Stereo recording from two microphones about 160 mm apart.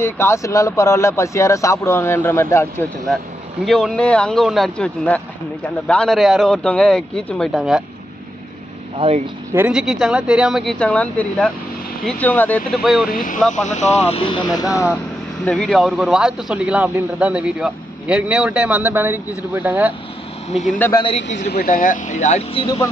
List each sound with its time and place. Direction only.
0.0 s speech: 15° left (ahead or behind)
3.6 s speech: centre (ahead or behind)
8.9 s speech: 35° right (ahead or behind)
9.7 s speech: 5° right (ahead or behind)
12.7 s speech: centre (ahead or behind)
13.1 s speech: 55° left (ahead or behind); by 14.5 s 30° left (ahead or behind)
14.6 s speech: 20° left (ahead or behind)
15.4 s a man's voice: 5° left (ahead or behind)
20.9 s speech: 30° left (ahead or behind)
21.4 s speech: 80° left; by 22.4 s 50° left (ahead or behind)
22.5 s speech: 30° left (ahead or behind)